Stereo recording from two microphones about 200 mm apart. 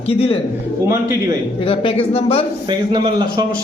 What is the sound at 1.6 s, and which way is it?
Speech, 25° left (ahead or behind).